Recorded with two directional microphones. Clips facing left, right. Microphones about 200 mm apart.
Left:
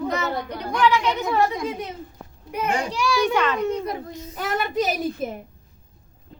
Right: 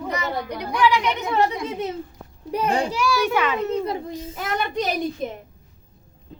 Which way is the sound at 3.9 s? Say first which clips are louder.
Right 3 dB; 30° right (ahead or behind).